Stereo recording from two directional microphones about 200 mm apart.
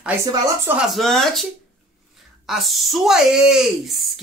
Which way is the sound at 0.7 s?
Centre (ahead or behind).